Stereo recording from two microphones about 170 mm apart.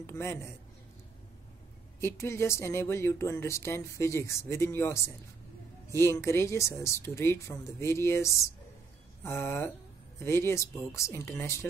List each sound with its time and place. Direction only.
0.0 s speech: 15° left (ahead or behind)
2.0 s speech: 15° left (ahead or behind)